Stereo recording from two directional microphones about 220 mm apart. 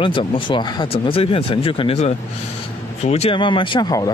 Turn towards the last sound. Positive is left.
turn(degrees=20)  # may be behind; listen again after turning